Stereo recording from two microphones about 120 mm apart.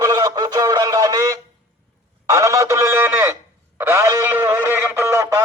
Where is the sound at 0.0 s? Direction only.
30° right (ahead or behind).